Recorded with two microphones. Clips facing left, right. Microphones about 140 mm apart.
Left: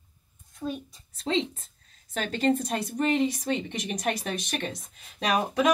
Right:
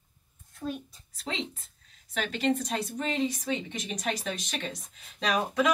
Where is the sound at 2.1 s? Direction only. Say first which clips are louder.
Left 3 dB; 45° left (ahead or behind).